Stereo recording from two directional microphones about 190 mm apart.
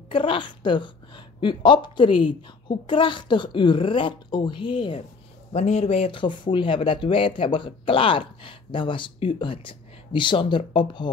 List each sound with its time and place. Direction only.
0.1 s a woman's voice: 25° left (ahead or behind)